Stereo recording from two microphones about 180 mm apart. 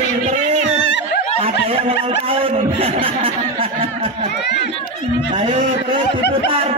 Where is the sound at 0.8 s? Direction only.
80° left.